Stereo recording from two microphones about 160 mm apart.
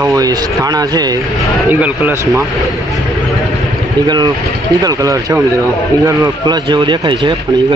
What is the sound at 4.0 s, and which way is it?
Speech, 25° right (ahead or behind).